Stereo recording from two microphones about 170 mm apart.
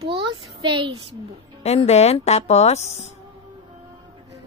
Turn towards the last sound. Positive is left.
turn(degrees=40)  # may be behind; listen again after turning